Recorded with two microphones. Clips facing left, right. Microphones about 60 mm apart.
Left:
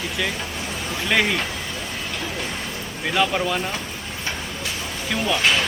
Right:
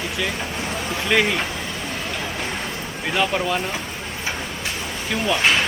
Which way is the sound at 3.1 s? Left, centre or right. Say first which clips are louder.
Even; centre.